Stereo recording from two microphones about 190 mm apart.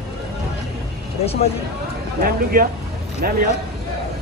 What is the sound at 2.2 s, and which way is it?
Speech, 50° right (ahead or behind).